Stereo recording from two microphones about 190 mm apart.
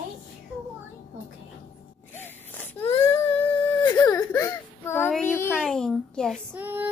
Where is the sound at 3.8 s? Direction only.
20° left (ahead or behind).